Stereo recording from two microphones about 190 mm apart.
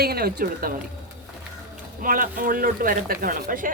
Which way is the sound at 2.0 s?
45° right (ahead or behind).